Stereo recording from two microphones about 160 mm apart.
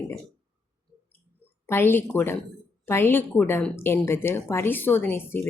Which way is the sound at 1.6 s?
15° left (ahead or behind).